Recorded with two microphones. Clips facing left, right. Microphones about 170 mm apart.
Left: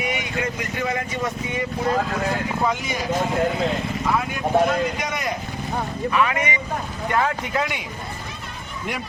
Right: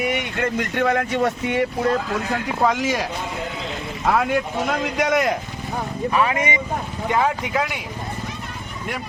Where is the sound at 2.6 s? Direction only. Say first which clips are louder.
Right 8 dB; 90° right.